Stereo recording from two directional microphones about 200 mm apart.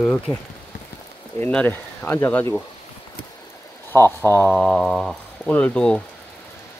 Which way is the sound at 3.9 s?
10° left (ahead or behind).